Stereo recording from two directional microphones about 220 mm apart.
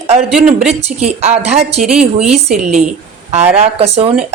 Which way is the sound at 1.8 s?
5° right (ahead or behind).